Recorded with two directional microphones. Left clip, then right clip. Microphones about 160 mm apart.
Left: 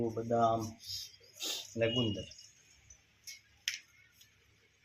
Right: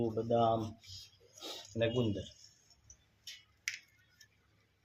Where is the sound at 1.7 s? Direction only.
30° right (ahead or behind).